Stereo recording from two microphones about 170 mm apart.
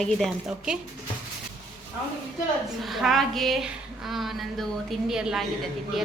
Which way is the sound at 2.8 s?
Centre (ahead or behind).